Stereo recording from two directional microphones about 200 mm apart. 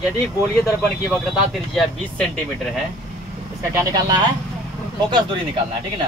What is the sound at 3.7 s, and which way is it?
Speech, 20° right (ahead or behind).